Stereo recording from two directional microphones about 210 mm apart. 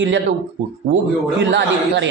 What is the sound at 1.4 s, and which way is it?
Speech, 55° right (ahead or behind).